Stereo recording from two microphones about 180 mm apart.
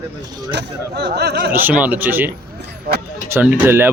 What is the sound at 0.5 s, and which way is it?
Speech, 70° right (ahead or behind).